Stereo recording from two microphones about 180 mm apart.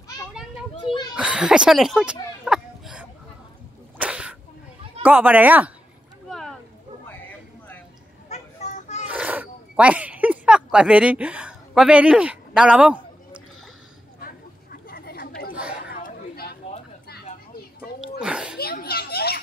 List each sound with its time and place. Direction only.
0.3 s children playing: 5° right (ahead or behind)
0.7 s children playing: 25° left (ahead or behind)
1.1 s speech: 5° right (ahead or behind)
2.4 s a sound: 5° right (ahead or behind)
4.0 s sneeze: 5° right (ahead or behind)
5.0 s speech: 10° right (ahead or behind)
6.2 s a sound: centre (ahead or behind)
8.3 s vehicle: 40° left (ahead or behind)
9.1 s a sound: 10° right (ahead or behind)
14.2 s chatter: 55° left (ahead or behind)
18.2 s a sound: 5° right (ahead or behind)
18.6 s children playing: 60° left (ahead or behind)